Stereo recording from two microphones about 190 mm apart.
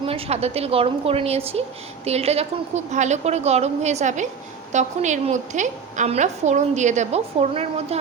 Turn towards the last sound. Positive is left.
turn(degrees=-35)  # may be behind; listen again after turning